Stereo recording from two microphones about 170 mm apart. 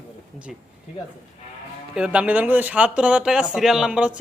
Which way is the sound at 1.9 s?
5° right (ahead or behind).